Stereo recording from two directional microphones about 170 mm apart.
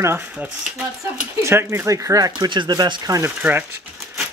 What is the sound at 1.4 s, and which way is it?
Speech, 15° right (ahead or behind).